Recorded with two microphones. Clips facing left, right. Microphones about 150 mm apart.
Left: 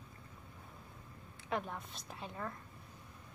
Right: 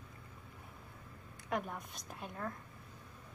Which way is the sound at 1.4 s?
10° right (ahead or behind).